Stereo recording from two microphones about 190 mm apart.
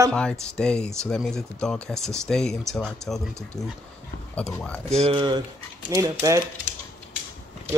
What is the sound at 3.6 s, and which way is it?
Speech, 20° left (ahead or behind).